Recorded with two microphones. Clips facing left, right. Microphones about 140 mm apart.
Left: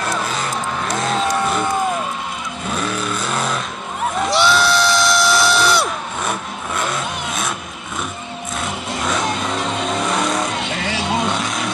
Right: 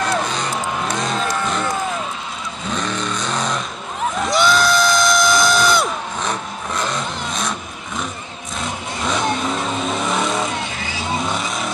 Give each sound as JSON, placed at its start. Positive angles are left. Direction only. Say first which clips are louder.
{"t": 0.3, "sound": "music", "louder": "even", "side_deg": 5}
{"t": 2.7, "sound": "vehicle", "louder": "left 1 dB", "side_deg": 5}
{"t": 4.3, "sound": "crowd", "louder": "even", "side_deg": 5}
{"t": 8.5, "sound": "a sound", "louder": "even", "side_deg": 0}
{"t": 10.0, "sound": "vehicle", "louder": "left 1 dB", "side_deg": 0}
{"t": 10.6, "sound": "vehicle", "louder": "left 4 dB", "side_deg": 75}
{"t": 11.2, "sound": "vehicle", "louder": "left 2 dB", "side_deg": 0}